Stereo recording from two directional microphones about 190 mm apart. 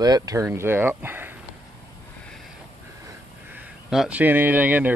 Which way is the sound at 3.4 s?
5° right (ahead or behind).